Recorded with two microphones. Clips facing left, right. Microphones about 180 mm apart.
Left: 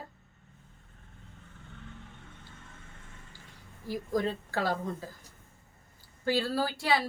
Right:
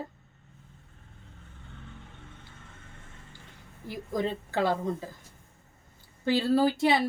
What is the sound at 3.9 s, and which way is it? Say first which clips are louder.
Speech: even; 20° right (ahead or behind).